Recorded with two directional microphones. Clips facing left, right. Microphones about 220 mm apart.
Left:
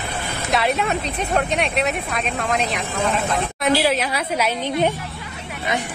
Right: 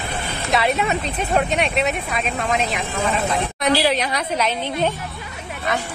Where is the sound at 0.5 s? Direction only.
Centre (ahead or behind).